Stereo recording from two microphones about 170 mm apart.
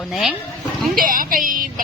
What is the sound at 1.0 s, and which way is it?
Music, 55° right (ahead or behind).